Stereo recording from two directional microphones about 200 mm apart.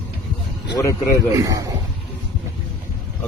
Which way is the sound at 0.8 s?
15° left (ahead or behind).